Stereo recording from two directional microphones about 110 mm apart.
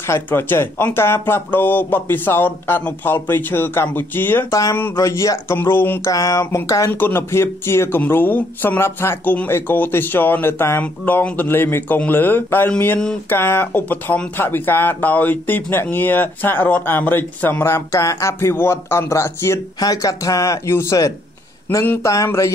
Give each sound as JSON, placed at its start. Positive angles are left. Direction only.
{"t": 0.0, "sound": "speech", "side_deg": 20}
{"t": 6.1, "sound": "speech", "side_deg": 30}